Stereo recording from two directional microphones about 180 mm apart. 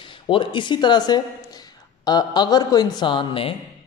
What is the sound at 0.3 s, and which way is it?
A man's voice, 25° left (ahead or behind).